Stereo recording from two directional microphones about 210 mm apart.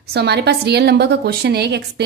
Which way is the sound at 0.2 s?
50° right (ahead or behind).